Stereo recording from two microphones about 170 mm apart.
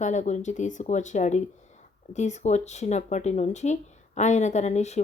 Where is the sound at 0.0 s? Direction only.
45° left (ahead or behind).